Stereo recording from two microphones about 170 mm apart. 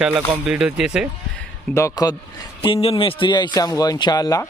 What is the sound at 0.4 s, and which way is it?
Speech, 5° right (ahead or behind).